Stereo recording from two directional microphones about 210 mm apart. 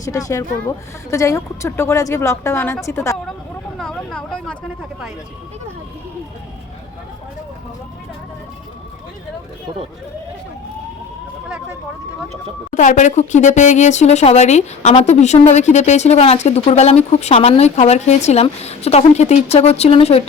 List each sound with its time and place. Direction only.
0.0 s a woman's voice: 15° left (ahead or behind)
3.8 s a sound: 5° left (ahead or behind)
12.7 s speech: 35° left (ahead or behind)